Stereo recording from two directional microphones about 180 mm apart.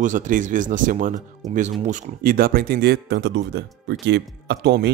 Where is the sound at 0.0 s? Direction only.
45° right (ahead or behind).